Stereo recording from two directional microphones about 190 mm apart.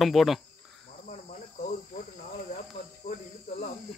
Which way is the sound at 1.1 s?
35° left (ahead or behind).